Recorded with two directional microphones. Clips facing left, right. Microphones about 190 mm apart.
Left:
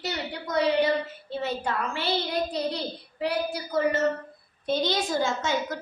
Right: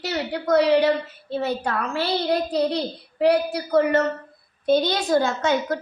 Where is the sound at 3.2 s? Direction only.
65° right (ahead or behind).